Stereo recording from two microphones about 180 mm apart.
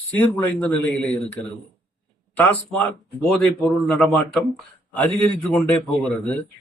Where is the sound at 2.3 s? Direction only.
10° left (ahead or behind).